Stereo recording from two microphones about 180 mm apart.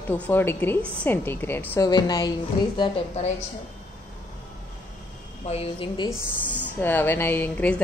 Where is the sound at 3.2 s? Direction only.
35° left (ahead or behind).